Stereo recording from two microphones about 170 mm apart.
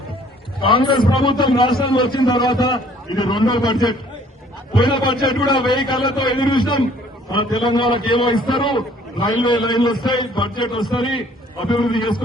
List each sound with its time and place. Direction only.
0.6 s a man's voice: 30° left (ahead or behind)